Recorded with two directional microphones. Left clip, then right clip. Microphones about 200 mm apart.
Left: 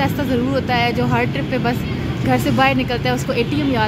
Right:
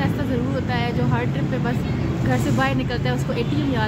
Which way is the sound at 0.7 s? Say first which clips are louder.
Left 7 dB; 30° left (ahead or behind).